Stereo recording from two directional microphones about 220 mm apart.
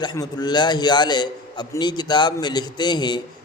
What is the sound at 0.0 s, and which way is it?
A man's voice, 20° left (ahead or behind).